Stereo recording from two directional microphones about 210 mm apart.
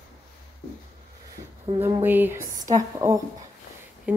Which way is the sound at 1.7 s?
10° right (ahead or behind).